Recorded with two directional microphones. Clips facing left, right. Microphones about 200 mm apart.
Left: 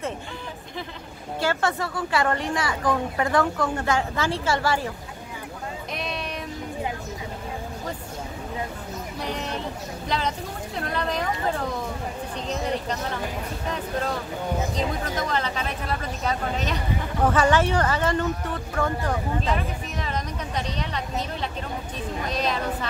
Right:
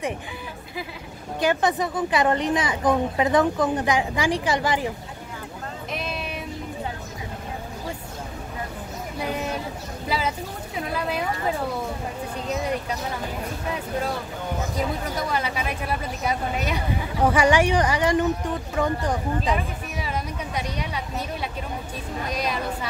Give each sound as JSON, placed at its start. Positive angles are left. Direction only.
{"t": 1.4, "sound": "speech", "side_deg": -15}
{"t": 5.9, "sound": "music", "side_deg": 0}
{"t": 9.2, "sound": "a sound", "side_deg": -5}
{"t": 10.0, "sound": "speech", "side_deg": -5}
{"t": 14.8, "sound": "speech", "side_deg": -10}